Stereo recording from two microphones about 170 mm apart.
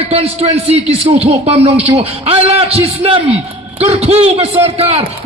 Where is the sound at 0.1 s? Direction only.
35° right (ahead or behind).